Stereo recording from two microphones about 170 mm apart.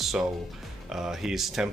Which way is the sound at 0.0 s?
Centre (ahead or behind).